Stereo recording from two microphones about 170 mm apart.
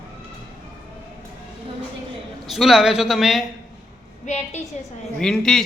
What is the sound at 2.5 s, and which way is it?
Speech, centre (ahead or behind).